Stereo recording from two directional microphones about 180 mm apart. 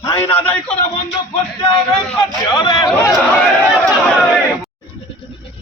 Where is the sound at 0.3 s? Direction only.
10° left (ahead or behind).